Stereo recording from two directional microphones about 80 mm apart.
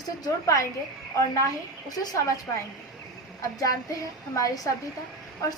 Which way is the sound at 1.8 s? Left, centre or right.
Left.